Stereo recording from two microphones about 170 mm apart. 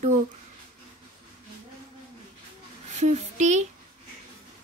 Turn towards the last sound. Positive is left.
turn(degrees=-45)  # may be behind; listen again after turning